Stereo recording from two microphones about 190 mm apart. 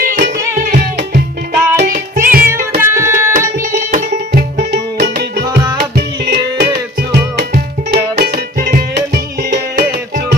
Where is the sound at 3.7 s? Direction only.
40° right (ahead or behind).